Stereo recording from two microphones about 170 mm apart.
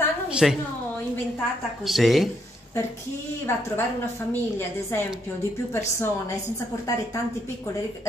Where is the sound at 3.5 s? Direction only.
15° left (ahead or behind).